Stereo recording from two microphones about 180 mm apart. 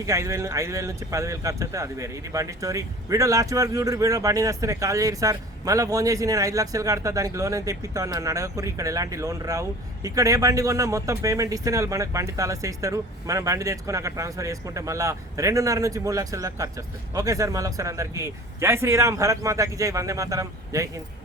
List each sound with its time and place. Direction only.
0.0 s speech: 15° right (ahead or behind)